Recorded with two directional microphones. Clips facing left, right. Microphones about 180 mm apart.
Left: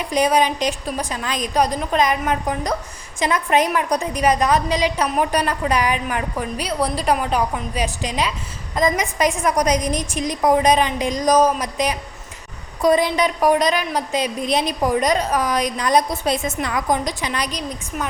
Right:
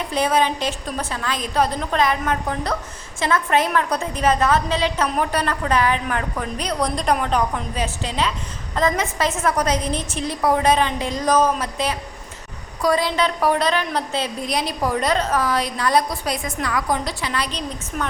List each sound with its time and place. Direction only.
0.1 s a woman's voice: 15° left (ahead or behind)